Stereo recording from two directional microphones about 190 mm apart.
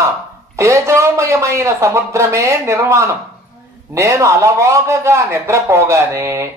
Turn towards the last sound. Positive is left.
turn(degrees=-15)  # may be behind; listen again after turning